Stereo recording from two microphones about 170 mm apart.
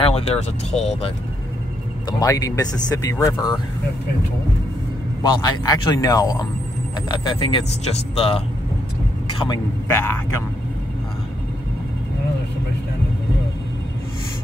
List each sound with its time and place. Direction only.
0.0 s speech: 35° left (ahead or behind)
2.0 s speech: 20° left (ahead or behind)
5.3 s speech: 20° left (ahead or behind)
9.9 s speech: 15° left (ahead or behind)